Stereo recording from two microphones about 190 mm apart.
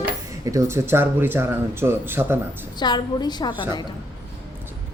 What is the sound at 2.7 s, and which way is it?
Speech, 20° left (ahead or behind).